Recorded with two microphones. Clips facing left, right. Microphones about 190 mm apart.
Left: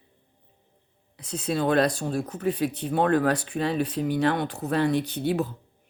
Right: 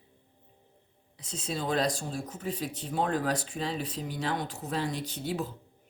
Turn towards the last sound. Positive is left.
turn(degrees=60)  # may be behind; listen again after turning